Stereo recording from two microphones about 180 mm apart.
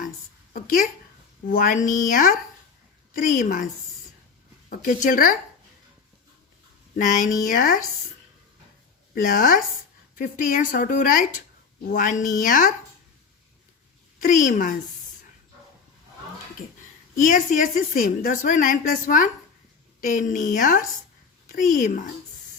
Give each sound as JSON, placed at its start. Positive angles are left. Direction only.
{"t": 1.5, "sound": "a woman's voice", "side_deg": 50}
{"t": 4.7, "sound": "a woman's voice", "side_deg": 45}
{"t": 6.9, "sound": "a woman's voice", "side_deg": 45}
{"t": 9.1, "sound": "a woman's voice", "side_deg": 50}
{"t": 14.2, "sound": "a woman's voice", "side_deg": 45}
{"t": 17.2, "sound": "a woman's voice", "side_deg": 45}